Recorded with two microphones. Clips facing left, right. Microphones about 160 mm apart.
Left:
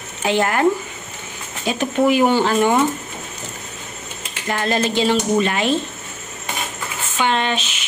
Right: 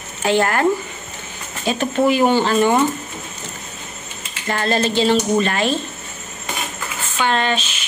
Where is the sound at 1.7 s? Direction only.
10° left (ahead or behind).